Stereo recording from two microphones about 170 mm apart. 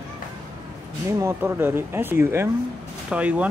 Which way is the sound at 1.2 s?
15° right (ahead or behind).